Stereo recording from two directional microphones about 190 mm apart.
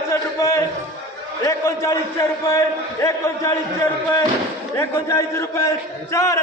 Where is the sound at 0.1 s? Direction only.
15° left (ahead or behind).